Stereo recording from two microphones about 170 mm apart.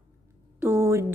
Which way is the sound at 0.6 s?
15° right (ahead or behind).